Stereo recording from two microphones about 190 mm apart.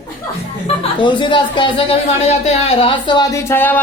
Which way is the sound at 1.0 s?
25° left (ahead or behind).